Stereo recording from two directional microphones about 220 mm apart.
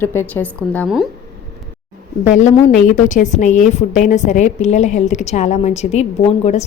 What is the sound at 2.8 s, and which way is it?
A woman's voice, 35° left (ahead or behind).